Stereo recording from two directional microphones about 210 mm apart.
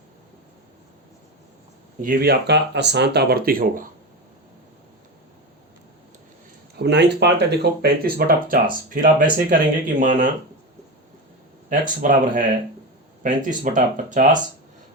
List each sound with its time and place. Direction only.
2.0 s speech: 45° right (ahead or behind)
6.7 s speech: 55° right (ahead or behind); by 10.2 s 35° right (ahead or behind)
11.7 s speech: 40° right (ahead or behind)